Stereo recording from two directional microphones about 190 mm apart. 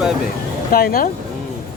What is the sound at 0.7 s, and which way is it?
Speech, 50° left (ahead or behind).